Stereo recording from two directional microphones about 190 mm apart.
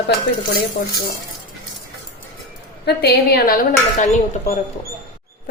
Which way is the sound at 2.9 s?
55° left (ahead or behind).